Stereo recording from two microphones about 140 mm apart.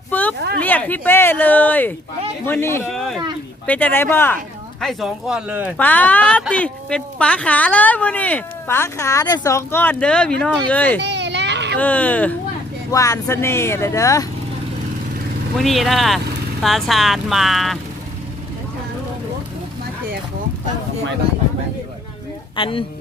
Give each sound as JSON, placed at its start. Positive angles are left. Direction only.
{"t": 0.1, "sound": "a woman's voice", "side_deg": 10}
{"t": 2.9, "sound": "a woman's voice", "side_deg": 0}
{"t": 4.8, "sound": "speech", "side_deg": 0}
{"t": 5.7, "sound": "a woman's voice", "side_deg": 10}
{"t": 12.9, "sound": "speech", "side_deg": 25}
{"t": 15.5, "sound": "speech", "side_deg": 0}
{"t": 22.5, "sound": "speech", "side_deg": 40}